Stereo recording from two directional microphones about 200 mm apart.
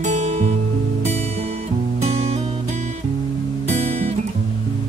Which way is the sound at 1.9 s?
30° right (ahead or behind).